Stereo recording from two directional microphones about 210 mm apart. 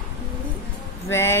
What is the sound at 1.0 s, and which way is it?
Speech, 15° left (ahead or behind).